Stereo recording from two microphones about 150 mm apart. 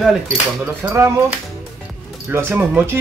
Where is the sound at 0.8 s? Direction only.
15° right (ahead or behind).